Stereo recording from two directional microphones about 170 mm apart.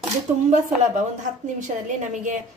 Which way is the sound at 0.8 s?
45° right (ahead or behind).